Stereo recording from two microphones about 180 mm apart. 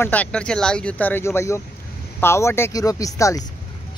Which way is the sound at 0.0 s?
10° left (ahead or behind).